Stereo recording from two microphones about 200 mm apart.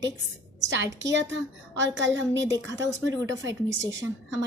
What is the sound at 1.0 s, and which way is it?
A woman's voice, 65° right (ahead or behind).